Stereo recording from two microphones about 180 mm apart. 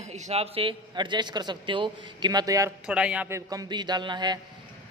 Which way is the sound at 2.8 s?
5° right (ahead or behind).